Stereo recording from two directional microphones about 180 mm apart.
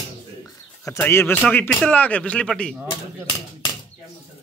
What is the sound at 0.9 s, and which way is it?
Speech, 15° left (ahead or behind).